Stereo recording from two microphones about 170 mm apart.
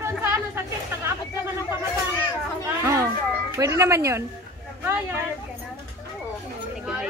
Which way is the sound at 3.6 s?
15° right (ahead or behind).